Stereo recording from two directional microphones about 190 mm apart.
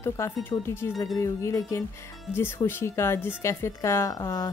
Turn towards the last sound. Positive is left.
turn(degrees=15)  # may be behind; listen again after turning